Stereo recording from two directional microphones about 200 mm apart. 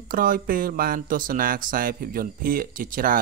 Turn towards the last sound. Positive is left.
turn(degrees=-45)  # may be behind; listen again after turning